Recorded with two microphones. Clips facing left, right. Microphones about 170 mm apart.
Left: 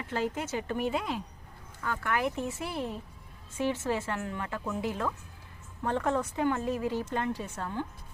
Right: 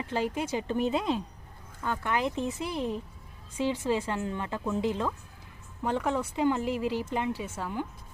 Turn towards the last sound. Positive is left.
turn(degrees=-10)  # may be behind; listen again after turning